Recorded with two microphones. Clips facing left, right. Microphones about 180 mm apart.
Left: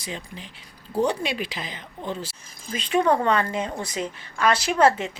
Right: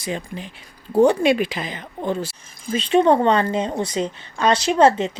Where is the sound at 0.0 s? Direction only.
55° right (ahead or behind).